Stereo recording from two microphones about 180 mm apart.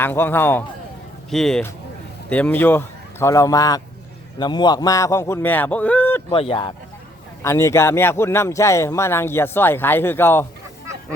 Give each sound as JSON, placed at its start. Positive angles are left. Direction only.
{"t": 0.0, "sound": "speech", "side_deg": 10}
{"t": 6.3, "sound": "speech", "side_deg": 30}
{"t": 7.4, "sound": "speech", "side_deg": 15}